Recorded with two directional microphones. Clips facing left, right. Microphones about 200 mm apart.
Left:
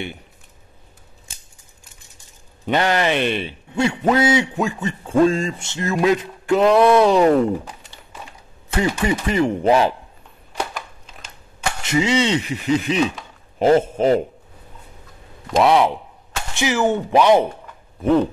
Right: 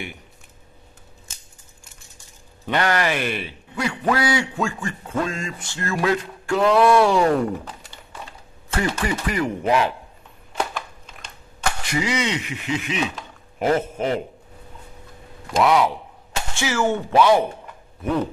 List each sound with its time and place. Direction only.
2.1 s speech: 20° left (ahead or behind)
8.7 s speech: 20° left (ahead or behind)
11.8 s speech: 25° left (ahead or behind)
15.6 s speech: 25° left (ahead or behind)